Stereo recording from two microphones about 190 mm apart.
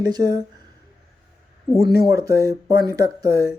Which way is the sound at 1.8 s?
55° left (ahead or behind).